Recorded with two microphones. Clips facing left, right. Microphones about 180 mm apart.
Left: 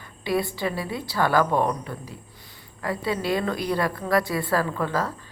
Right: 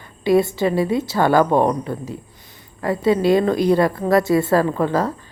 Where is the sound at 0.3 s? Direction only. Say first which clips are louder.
Right 9 dB; 25° right (ahead or behind).